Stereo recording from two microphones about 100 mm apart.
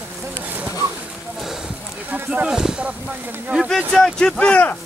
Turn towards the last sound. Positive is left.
turn(degrees=10)  # may be behind; listen again after turning